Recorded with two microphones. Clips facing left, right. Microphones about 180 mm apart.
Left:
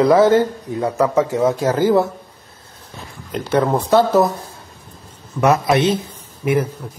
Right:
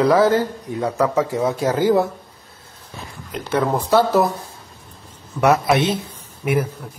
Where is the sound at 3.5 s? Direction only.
10° left (ahead or behind).